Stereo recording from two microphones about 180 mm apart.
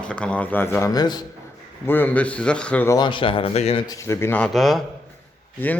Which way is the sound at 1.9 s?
10° left (ahead or behind).